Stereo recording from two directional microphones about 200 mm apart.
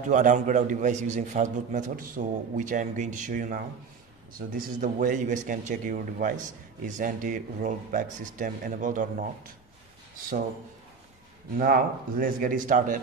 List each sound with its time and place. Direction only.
0.1 s a man's voice: 40° right (ahead or behind)
11.5 s speech: 45° right (ahead or behind)